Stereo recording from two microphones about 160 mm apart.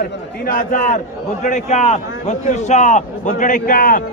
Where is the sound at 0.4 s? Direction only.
60° left (ahead or behind).